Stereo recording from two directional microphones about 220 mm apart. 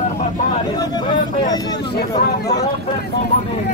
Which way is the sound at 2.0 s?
45° left (ahead or behind).